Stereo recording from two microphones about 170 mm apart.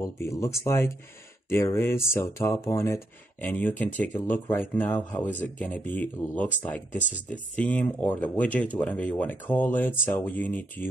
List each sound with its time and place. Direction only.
0.0 s speech: 15° left (ahead or behind)